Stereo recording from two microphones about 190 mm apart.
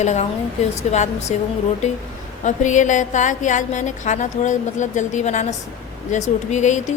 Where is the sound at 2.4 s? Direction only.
40° left (ahead or behind).